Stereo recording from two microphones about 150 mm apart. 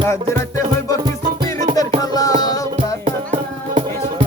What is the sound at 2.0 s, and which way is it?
Music, 25° left (ahead or behind).